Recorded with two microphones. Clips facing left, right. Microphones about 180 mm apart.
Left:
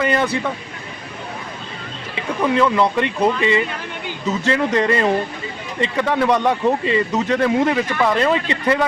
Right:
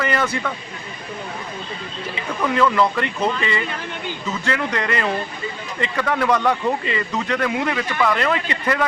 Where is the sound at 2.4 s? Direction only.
20° left (ahead or behind).